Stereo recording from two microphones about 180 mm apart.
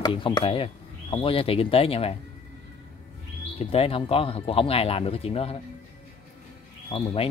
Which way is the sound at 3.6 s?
30° left (ahead or behind).